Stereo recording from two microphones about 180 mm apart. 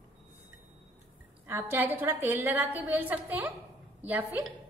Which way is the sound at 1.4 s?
10° right (ahead or behind).